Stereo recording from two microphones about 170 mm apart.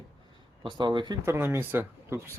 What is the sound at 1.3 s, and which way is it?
Speech, 15° right (ahead or behind).